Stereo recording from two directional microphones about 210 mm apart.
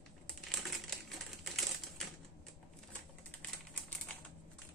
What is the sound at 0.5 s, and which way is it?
Typewriter, centre (ahead or behind).